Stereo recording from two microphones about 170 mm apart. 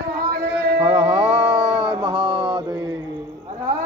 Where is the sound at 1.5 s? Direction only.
30° right (ahead or behind).